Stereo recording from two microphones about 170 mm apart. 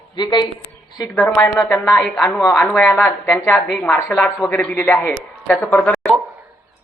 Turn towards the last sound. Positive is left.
turn(degrees=10)  # may be behind; listen again after turning